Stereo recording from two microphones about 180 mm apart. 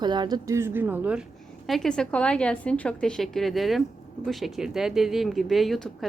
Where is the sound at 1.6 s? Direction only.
Centre (ahead or behind).